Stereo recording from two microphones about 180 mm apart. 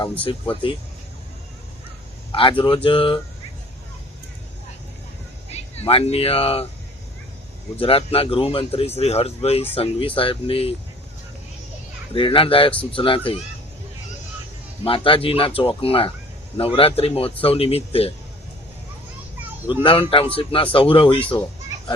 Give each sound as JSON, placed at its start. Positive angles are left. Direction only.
{"t": 0.0, "sound": "speech", "side_deg": 30}
{"t": 2.3, "sound": "speech", "side_deg": 30}
{"t": 5.5, "sound": "speech", "side_deg": 30}
{"t": 7.8, "sound": "speech", "side_deg": 30}
{"t": 12.1, "sound": "speech", "side_deg": 30}
{"t": 14.8, "sound": "speech", "side_deg": 30}
{"t": 19.8, "sound": "speech", "side_deg": 30}